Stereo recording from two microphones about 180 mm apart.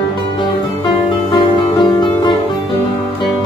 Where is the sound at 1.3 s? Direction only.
25° left (ahead or behind).